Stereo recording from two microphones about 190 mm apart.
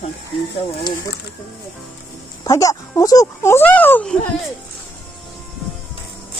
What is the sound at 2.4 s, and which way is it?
Speech, 15° left (ahead or behind).